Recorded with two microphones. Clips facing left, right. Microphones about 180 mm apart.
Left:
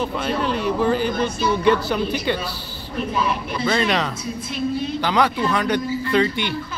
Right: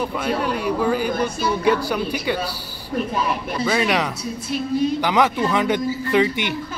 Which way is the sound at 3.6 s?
10° right (ahead or behind).